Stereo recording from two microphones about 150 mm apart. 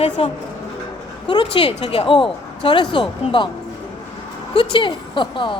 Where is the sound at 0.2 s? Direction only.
40° left (ahead or behind).